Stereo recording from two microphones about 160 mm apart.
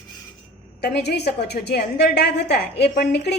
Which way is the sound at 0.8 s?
90° left.